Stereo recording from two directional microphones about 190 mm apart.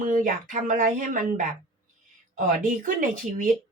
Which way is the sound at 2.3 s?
45° right (ahead or behind).